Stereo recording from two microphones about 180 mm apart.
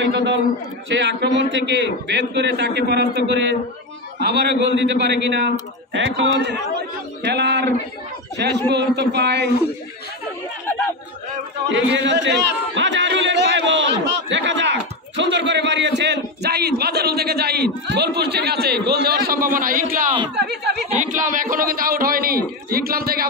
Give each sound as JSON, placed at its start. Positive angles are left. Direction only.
{"t": 0.1, "sound": "a man's voice", "side_deg": -70}
{"t": 0.8, "sound": "a man's voice", "side_deg": -85}
{"t": 5.9, "sound": "a man's voice", "side_deg": -90}
{"t": 11.7, "sound": "a man's voice", "side_deg": -80}
{"t": 20.3, "sound": "a man's voice", "side_deg": -65}
{"t": 21.0, "sound": "a man's voice", "side_deg": -45}